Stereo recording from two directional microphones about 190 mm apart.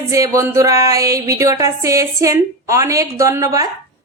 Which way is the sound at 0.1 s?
15° right (ahead or behind).